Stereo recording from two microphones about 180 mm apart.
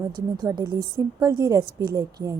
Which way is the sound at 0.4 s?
25° right (ahead or behind).